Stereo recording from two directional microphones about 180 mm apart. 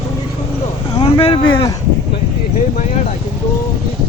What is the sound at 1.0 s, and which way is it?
Speech, 30° left (ahead or behind).